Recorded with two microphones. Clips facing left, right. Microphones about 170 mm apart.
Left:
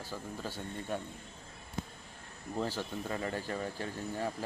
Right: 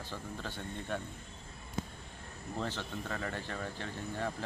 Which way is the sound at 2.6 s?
10° left (ahead or behind).